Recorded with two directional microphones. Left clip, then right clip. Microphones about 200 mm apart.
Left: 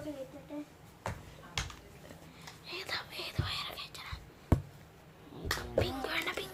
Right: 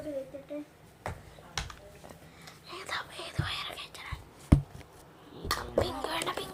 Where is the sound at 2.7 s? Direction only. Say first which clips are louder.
Right 2 dB; 5° left (ahead or behind).